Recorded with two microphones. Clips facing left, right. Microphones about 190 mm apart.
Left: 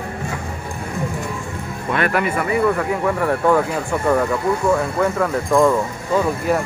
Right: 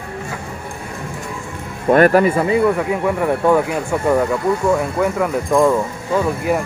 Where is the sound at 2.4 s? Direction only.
20° right (ahead or behind).